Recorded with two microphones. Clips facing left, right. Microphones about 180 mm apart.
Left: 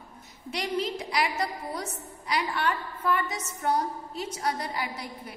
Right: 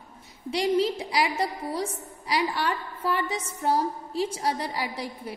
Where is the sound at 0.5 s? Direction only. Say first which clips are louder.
Right 6 dB; 30° right (ahead or behind).